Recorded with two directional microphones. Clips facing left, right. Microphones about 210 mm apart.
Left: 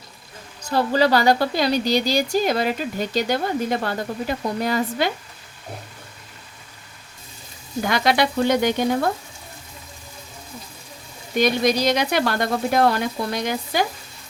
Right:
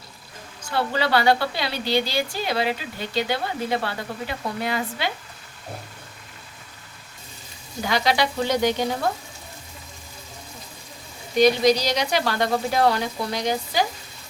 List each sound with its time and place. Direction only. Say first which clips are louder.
0.6 s speech: left 5 dB; 40° left (ahead or behind)
7.9 s speech: left 2 dB; 55° left (ahead or behind)
11.3 s speech: right 2 dB; 55° left (ahead or behind)